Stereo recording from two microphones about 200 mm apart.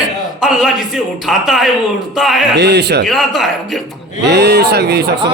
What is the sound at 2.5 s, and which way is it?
Speech, 55° right (ahead or behind).